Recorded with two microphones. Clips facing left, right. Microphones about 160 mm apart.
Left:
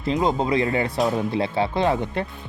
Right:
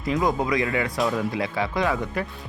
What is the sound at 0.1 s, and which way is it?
Speech, 25° left (ahead or behind).